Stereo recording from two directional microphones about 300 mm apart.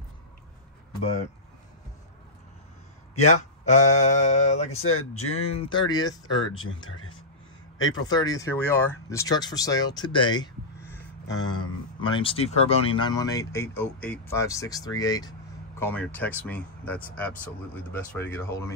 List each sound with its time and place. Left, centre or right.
3.6 s mantra: left
4.7 s speech: left
5.5 s speech: centre
6.6 s speech: left
7.8 s speech: centre